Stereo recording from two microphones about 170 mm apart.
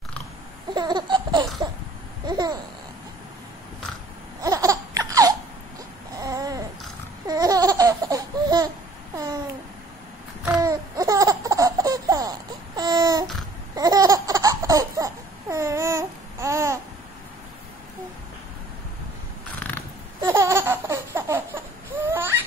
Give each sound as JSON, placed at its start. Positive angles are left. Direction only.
{"t": 0.7, "sound": "laughter", "side_deg": -25}
{"t": 2.2, "sound": "babbling", "side_deg": -25}
{"t": 4.4, "sound": "laughter", "side_deg": -20}
{"t": 6.1, "sound": "babbling", "side_deg": -20}
{"t": 7.2, "sound": "laughter", "side_deg": -20}
{"t": 9.1, "sound": "babbling", "side_deg": -20}
{"t": 10.6, "sound": "laughter", "side_deg": -20}
{"t": 19.6, "sound": "a sound", "side_deg": 10}
{"t": 20.2, "sound": "baby laughter", "side_deg": -15}